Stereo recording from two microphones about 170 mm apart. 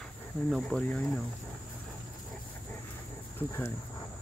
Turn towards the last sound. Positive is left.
turn(degrees=15)  # may be behind; listen again after turning